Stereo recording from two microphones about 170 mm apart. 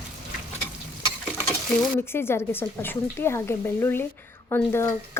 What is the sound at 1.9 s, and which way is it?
Speech, 15° left (ahead or behind).